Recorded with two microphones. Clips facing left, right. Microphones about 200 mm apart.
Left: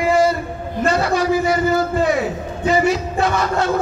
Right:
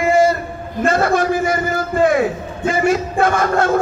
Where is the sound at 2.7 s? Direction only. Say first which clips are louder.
Even; 50° right (ahead or behind).